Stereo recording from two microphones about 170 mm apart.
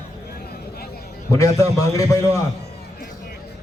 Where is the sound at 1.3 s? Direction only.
20° left (ahead or behind).